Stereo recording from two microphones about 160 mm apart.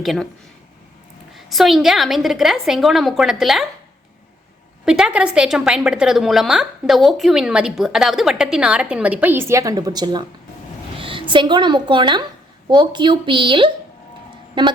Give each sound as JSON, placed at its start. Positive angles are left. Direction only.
{"t": 0.0, "sound": "a woman's voice", "side_deg": 0}
{"t": 1.5, "sound": "a woman's voice", "side_deg": 0}
{"t": 4.9, "sound": "a woman's voice", "side_deg": -5}